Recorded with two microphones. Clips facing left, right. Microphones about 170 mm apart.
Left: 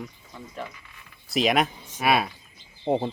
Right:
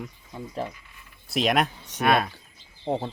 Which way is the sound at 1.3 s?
Centre (ahead or behind).